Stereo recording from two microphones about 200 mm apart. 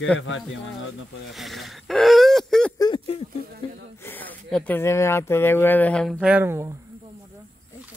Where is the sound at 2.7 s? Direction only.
20° left (ahead or behind).